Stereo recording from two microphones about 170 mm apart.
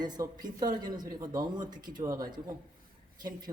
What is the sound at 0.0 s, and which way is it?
A man's voice, 25° right (ahead or behind).